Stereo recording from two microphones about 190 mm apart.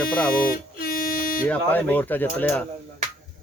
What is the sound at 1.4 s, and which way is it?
Speech, 10° left (ahead or behind).